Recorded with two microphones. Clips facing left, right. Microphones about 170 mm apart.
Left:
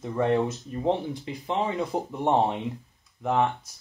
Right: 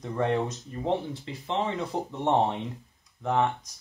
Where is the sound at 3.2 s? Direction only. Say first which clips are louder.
Left 1 dB; 10° left (ahead or behind).